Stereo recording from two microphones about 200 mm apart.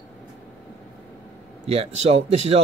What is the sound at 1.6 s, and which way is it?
Speech, 30° right (ahead or behind).